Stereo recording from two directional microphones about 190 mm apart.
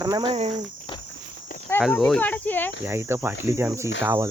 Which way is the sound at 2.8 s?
15° right (ahead or behind).